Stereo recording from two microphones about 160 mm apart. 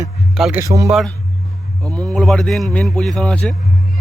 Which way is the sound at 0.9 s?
Centre (ahead or behind).